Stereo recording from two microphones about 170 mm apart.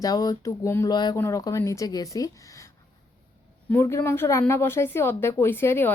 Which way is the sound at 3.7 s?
15° left (ahead or behind).